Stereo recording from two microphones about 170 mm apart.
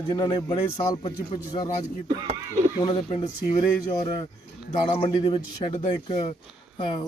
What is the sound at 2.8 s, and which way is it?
Speech, 25° left (ahead or behind).